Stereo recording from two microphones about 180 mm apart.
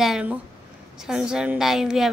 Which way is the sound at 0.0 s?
5° right (ahead or behind).